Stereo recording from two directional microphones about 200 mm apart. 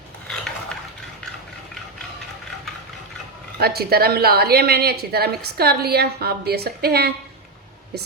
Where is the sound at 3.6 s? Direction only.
50° right (ahead or behind).